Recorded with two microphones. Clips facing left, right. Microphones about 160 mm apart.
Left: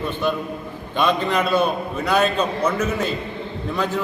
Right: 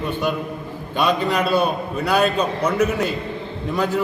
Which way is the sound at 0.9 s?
10° right (ahead or behind).